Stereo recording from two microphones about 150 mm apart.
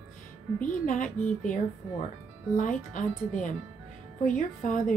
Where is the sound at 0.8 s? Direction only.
60° left (ahead or behind).